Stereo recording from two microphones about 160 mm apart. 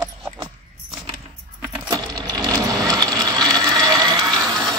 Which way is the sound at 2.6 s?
20° right (ahead or behind).